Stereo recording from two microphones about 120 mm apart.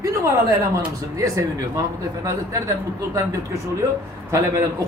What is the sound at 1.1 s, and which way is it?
Speech, 25° right (ahead or behind).